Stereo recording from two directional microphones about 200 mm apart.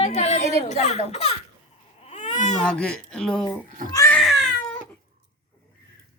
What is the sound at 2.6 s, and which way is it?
Speech, 5° left (ahead or behind).